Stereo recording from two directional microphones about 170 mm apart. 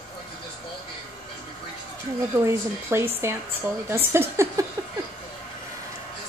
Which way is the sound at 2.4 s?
15° right (ahead or behind).